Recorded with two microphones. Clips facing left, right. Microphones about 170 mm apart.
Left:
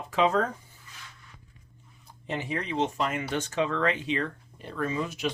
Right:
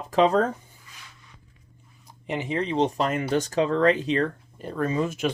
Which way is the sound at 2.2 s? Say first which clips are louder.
Right 5 dB; 20° right (ahead or behind).